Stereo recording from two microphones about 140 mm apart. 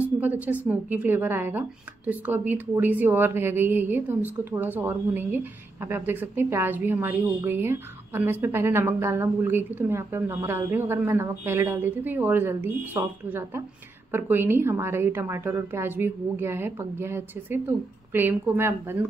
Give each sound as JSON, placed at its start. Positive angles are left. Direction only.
{"t": 0.0, "sound": "a woman's voice", "side_deg": -10}